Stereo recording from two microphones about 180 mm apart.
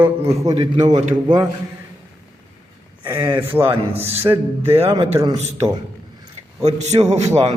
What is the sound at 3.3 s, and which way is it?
A man's voice, 10° right (ahead or behind).